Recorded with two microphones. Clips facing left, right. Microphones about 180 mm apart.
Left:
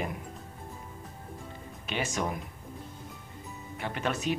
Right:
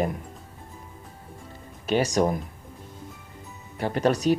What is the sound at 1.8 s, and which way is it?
Speech, 40° right (ahead or behind).